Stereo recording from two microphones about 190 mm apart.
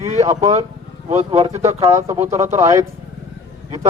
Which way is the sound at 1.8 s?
15° right (ahead or behind).